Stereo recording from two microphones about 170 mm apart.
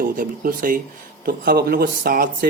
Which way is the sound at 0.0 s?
55° right (ahead or behind).